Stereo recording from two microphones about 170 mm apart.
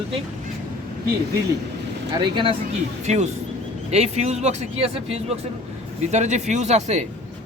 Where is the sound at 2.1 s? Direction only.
25° right (ahead or behind).